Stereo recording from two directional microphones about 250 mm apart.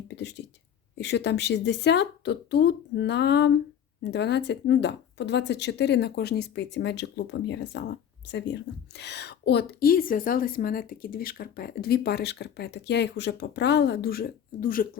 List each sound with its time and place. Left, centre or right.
0.1 s speech: left